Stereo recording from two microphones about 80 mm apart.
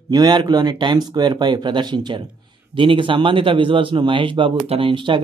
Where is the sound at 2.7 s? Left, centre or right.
Right.